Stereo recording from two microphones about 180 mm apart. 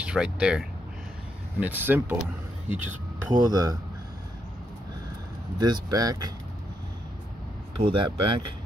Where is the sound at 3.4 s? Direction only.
20° right (ahead or behind).